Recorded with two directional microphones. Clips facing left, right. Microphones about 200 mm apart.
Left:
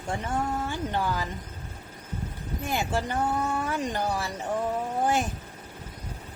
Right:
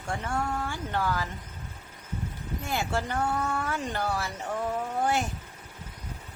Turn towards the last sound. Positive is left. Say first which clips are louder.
# left 2 dB
turn(degrees=15)  # may be behind; listen again after turning